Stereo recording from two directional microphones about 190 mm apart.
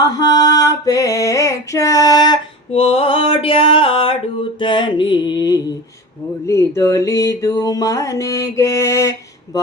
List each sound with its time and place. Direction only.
0.0 s female singing: 20° left (ahead or behind)
4.6 s mantra: 25° left (ahead or behind)